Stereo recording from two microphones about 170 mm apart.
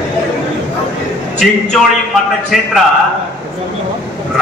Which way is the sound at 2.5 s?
Centre (ahead or behind).